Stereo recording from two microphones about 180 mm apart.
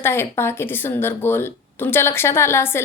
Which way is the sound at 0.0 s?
15° left (ahead or behind).